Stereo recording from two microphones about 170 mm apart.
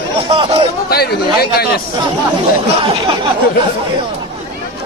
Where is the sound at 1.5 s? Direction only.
65° left (ahead or behind).